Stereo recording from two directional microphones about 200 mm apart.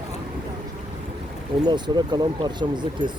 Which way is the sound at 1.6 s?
20° right (ahead or behind).